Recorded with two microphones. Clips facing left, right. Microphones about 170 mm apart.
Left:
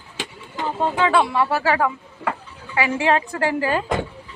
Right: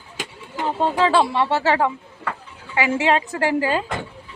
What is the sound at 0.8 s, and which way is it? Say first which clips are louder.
Speech: right 1 dB; 30° right (ahead or behind).